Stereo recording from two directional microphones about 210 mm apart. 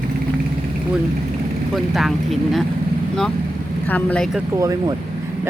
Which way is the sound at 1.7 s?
Centre (ahead or behind).